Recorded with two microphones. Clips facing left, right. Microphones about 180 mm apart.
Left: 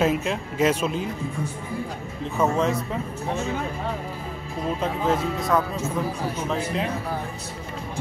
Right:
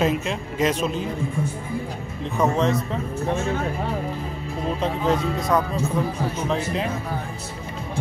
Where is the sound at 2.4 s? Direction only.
5° left (ahead or behind).